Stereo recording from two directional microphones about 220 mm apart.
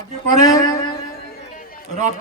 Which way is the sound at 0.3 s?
15° left (ahead or behind).